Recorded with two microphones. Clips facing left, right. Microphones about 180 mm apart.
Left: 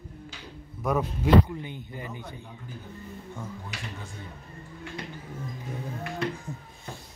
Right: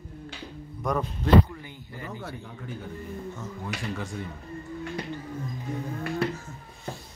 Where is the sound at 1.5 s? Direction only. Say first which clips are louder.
Left 5 dB; 20° left (ahead or behind).